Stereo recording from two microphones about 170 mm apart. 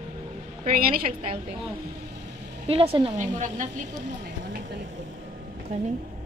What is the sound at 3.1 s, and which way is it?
Speech, 45° right (ahead or behind).